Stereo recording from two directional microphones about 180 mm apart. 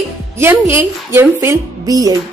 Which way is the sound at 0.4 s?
15° right (ahead or behind).